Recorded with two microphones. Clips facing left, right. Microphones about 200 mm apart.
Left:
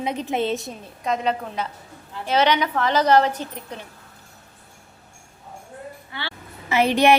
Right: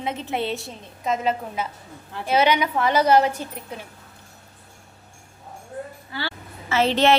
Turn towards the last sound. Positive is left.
turn(degrees=15)  # may be behind; listen again after turning